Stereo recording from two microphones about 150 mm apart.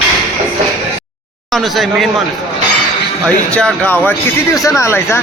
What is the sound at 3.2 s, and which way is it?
Speech, 5° left (ahead or behind).